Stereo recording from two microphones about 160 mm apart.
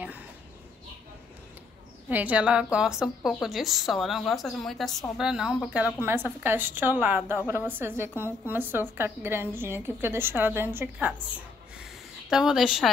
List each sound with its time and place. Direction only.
2.0 s a woman's voice: 10° right (ahead or behind)